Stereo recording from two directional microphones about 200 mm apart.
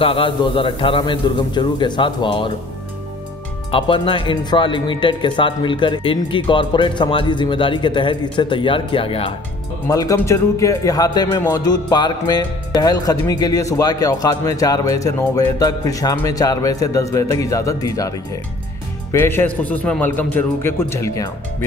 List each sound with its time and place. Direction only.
0.0 s speech: 25° left (ahead or behind)
3.7 s speech: 25° left (ahead or behind)
9.8 s speech: 15° left (ahead or behind)